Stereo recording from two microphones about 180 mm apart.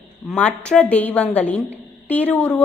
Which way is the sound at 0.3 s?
5° left (ahead or behind).